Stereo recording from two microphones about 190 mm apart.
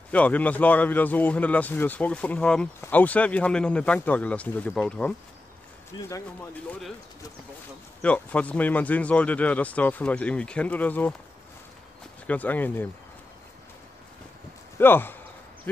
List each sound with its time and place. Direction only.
0.1 s speech: 5° left (ahead or behind)
5.9 s speech: 20° left (ahead or behind)
8.0 s speech: 5° left (ahead or behind)
12.3 s speech: 10° left (ahead or behind)
14.8 s speech: 10° left (ahead or behind)